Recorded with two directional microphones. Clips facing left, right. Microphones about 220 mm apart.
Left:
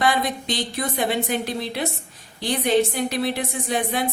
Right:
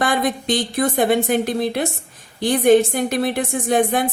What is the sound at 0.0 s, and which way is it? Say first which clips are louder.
A woman's voice: right 3 dB; 50° right (ahead or behind).